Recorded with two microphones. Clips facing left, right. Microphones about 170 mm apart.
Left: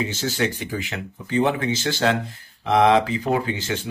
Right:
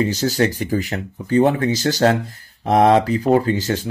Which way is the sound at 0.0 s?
40° right (ahead or behind).